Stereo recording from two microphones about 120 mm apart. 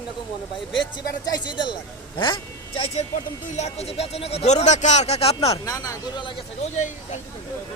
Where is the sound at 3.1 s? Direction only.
65° left (ahead or behind).